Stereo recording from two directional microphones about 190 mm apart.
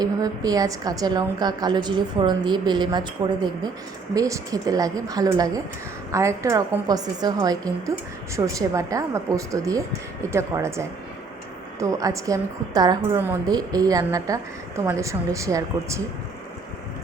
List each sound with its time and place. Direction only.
0.0 s a woman's voice: 20° right (ahead or behind)